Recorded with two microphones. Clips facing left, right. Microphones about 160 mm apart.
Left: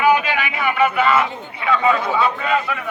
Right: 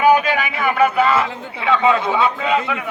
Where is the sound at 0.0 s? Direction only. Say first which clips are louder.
Right 2 dB; 40° right (ahead or behind).